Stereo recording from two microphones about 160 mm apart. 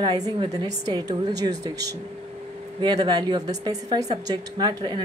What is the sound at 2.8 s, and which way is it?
Speech, 25° right (ahead or behind).